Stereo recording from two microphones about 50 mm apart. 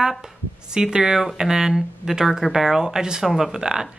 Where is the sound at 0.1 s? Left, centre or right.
Centre.